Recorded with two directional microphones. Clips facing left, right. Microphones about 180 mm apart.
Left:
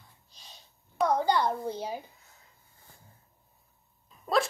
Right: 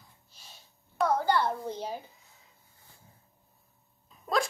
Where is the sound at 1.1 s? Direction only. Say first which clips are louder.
Left 1 dB; 15° left (ahead or behind).